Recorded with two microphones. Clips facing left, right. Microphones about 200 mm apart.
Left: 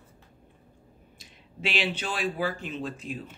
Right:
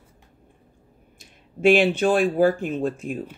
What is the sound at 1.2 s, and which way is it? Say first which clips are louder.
Speech: right 11 dB; 50° right (ahead or behind).